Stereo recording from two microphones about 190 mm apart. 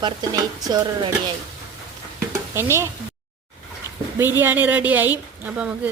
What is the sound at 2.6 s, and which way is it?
Speech, 15° right (ahead or behind).